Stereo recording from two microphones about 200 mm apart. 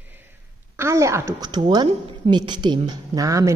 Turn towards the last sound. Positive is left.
turn(degrees=-15)  # may be behind; listen again after turning